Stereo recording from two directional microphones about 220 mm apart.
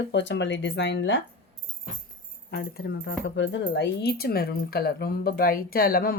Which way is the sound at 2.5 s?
45° left (ahead or behind).